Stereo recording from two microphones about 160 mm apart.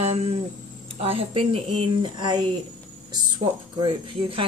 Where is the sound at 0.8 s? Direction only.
35° right (ahead or behind).